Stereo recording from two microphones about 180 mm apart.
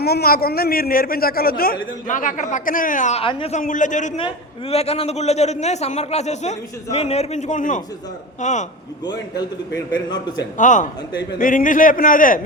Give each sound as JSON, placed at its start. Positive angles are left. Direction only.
{"t": 0.0, "sound": "a man's voice", "side_deg": 60}
{"t": 3.6, "sound": "a man's voice", "side_deg": 45}
{"t": 9.0, "sound": "a man's voice", "side_deg": 20}
{"t": 10.6, "sound": "a man's voice", "side_deg": 45}